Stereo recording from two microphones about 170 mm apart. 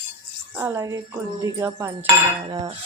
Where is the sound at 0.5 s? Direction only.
15° right (ahead or behind).